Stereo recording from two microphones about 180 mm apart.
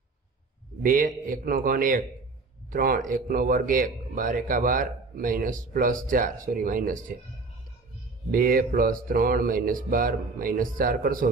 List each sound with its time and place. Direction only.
0.8 s speech: 50° right (ahead or behind)
8.3 s speech: 55° right (ahead or behind)